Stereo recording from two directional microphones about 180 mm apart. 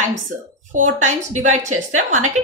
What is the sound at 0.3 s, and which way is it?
A woman's voice, 50° right (ahead or behind).